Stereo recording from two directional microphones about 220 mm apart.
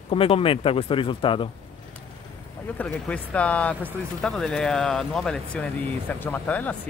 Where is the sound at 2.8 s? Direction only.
5° left (ahead or behind).